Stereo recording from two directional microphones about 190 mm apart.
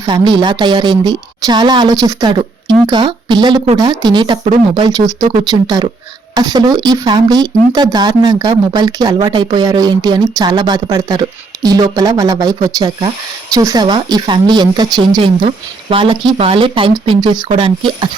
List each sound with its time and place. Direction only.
0.0 s a woman's voice: 25° right (ahead or behind)